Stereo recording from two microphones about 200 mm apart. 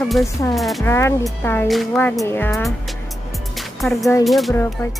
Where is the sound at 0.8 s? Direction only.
15° left (ahead or behind).